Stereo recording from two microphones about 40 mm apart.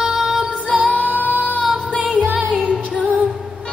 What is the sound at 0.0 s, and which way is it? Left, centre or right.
Music, centre.